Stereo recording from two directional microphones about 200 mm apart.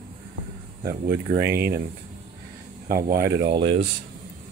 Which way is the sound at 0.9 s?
45° right (ahead or behind).